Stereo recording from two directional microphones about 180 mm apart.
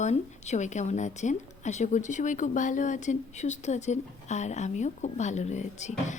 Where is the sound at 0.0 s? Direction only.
40° left (ahead or behind).